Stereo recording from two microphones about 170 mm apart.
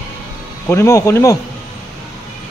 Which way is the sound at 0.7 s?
15° left (ahead or behind).